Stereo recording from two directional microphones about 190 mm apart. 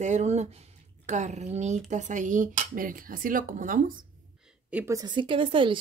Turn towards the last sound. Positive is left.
turn(degrees=-25)  # may be behind; listen again after turning